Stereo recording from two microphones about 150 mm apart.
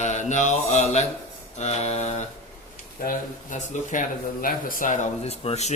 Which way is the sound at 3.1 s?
55° left (ahead or behind).